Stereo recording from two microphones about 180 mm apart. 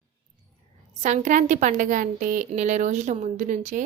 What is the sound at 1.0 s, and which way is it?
A woman's voice, 45° right (ahead or behind).